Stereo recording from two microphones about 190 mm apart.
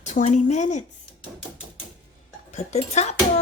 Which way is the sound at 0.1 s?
40° left (ahead or behind).